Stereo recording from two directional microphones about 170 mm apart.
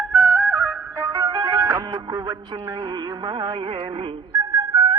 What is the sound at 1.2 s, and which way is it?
Music, 25° right (ahead or behind).